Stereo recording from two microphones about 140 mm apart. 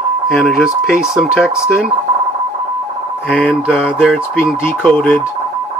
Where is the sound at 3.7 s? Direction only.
5° right (ahead or behind).